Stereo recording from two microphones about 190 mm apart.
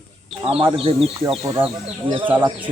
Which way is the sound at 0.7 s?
30° right (ahead or behind).